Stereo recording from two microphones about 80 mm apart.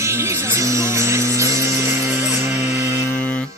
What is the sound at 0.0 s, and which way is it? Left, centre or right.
Music, right.